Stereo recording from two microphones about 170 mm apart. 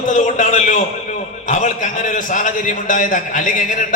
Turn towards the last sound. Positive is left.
turn(degrees=50)  # may be behind; listen again after turning